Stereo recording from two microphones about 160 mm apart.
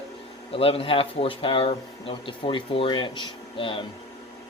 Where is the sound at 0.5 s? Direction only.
35° left (ahead or behind).